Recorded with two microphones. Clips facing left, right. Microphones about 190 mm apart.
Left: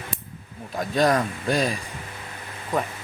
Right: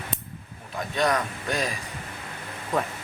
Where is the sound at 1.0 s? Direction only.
35° left (ahead or behind).